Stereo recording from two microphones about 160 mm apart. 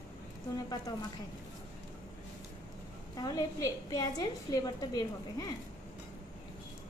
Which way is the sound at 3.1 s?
25° left (ahead or behind).